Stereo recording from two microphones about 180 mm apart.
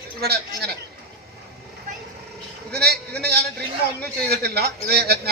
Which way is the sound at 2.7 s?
65° right (ahead or behind).